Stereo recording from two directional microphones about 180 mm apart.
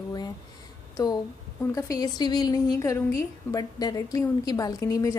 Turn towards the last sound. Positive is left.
turn(degrees=20)  # may be behind; listen again after turning